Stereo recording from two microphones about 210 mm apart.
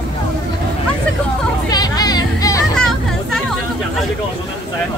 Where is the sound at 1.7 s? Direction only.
20° left (ahead or behind).